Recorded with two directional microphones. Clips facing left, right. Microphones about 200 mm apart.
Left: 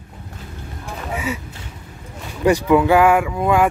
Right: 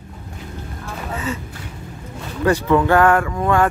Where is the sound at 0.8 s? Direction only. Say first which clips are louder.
Left 1 dB; 10° left (ahead or behind).